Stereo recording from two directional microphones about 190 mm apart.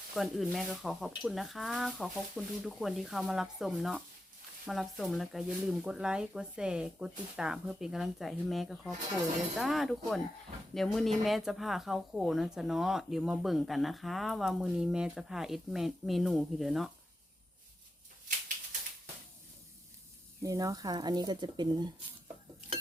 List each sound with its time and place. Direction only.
0.1 s speech: centre (ahead or behind)
20.4 s speech: 15° right (ahead or behind)